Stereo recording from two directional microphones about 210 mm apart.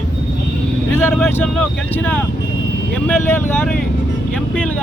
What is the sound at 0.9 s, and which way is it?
Speech, 10° left (ahead or behind).